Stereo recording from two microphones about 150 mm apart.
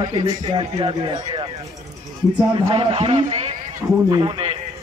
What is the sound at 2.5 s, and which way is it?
Speech, 35° right (ahead or behind).